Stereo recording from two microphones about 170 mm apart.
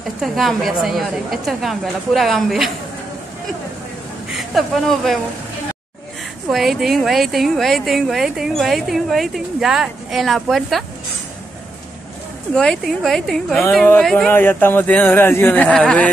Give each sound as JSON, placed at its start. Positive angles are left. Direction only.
{"t": 0.2, "sound": "a woman's voice", "side_deg": 0}
{"t": 4.6, "sound": "a woman's voice", "side_deg": 0}
{"t": 6.5, "sound": "a woman's voice", "side_deg": 0}
{"t": 12.5, "sound": "a woman's voice", "side_deg": 0}